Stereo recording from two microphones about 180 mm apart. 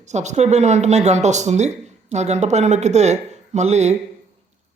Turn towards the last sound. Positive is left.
turn(degrees=-40)  # may be behind; listen again after turning